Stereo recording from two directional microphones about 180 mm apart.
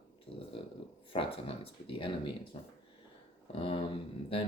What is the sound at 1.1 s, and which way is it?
Speech, 30° left (ahead or behind).